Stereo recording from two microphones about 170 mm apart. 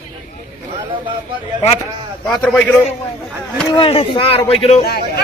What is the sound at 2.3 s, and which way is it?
Speech, 5° left (ahead or behind).